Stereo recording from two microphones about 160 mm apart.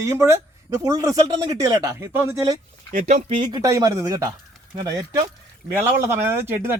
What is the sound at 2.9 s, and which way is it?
A man's voice, 45° right (ahead or behind).